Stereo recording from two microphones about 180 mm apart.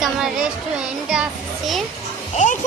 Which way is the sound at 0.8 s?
5° right (ahead or behind).